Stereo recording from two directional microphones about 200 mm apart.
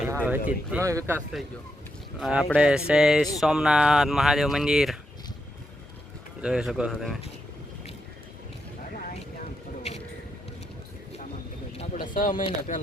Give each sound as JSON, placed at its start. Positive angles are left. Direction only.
{"t": 0.3, "sound": "speech", "side_deg": -10}
{"t": 2.2, "sound": "speech", "side_deg": 0}
{"t": 6.4, "sound": "speech", "side_deg": -5}
{"t": 9.9, "sound": "a sound", "side_deg": 35}
{"t": 11.8, "sound": "speech", "side_deg": 45}